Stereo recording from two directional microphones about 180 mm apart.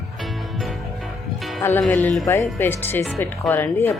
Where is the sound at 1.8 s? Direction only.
5° left (ahead or behind).